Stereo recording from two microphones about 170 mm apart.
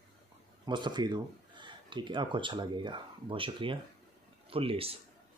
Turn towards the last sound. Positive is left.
turn(degrees=-35)  # may be behind; listen again after turning